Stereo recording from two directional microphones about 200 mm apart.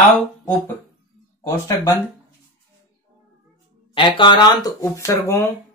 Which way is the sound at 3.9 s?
25° left (ahead or behind).